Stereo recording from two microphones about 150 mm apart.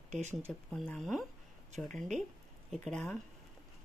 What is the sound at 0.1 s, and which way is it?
Speech, 50° right (ahead or behind).